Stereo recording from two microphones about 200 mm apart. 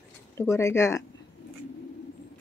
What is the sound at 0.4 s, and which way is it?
Speech, 15° left (ahead or behind).